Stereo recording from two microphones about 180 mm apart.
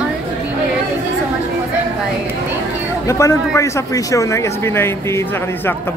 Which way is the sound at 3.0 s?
15° left (ahead or behind).